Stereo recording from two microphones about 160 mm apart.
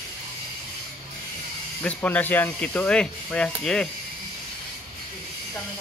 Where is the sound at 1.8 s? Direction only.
10° left (ahead or behind).